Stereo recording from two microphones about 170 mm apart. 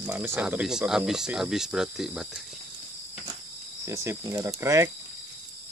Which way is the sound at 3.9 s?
15° right (ahead or behind).